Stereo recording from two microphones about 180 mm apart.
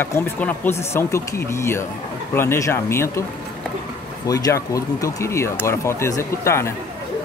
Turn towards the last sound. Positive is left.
turn(degrees=15)  # may be behind; listen again after turning